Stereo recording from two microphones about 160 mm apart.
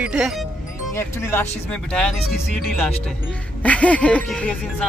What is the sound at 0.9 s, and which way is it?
Speech, 15° left (ahead or behind).